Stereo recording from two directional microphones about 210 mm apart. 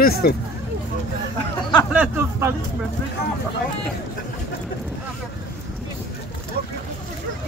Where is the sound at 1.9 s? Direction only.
10° right (ahead or behind).